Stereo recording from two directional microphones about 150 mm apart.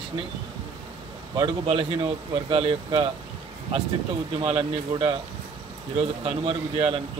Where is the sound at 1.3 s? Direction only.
35° right (ahead or behind).